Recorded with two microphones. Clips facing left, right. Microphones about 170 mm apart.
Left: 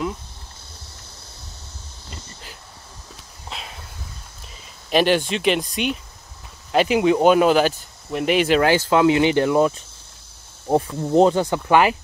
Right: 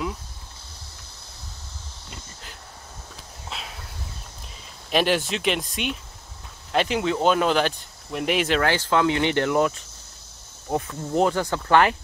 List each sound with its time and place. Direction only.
3.4 s a sound: centre (ahead or behind)
4.9 s speech: centre (ahead or behind)
10.9 s speech: 20° left (ahead or behind)